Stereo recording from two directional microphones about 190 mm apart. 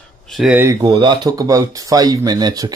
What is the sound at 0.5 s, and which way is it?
Speech, 15° right (ahead or behind).